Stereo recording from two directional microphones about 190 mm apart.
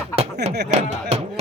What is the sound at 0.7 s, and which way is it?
Chopping, 35° right (ahead or behind).